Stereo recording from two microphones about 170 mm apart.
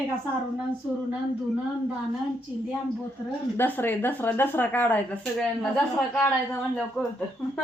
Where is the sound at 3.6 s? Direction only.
10° left (ahead or behind).